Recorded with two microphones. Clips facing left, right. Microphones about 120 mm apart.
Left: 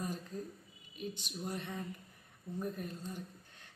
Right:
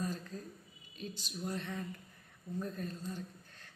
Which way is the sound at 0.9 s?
15° left (ahead or behind).